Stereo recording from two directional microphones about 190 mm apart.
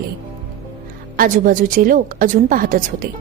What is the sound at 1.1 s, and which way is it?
A woman's voice, 50° right (ahead or behind).